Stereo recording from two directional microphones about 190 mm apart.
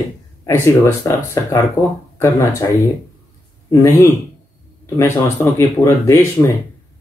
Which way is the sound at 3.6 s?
15° left (ahead or behind).